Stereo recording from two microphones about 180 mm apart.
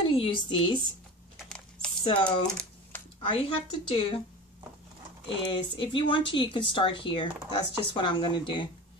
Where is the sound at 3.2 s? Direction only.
30° left (ahead or behind).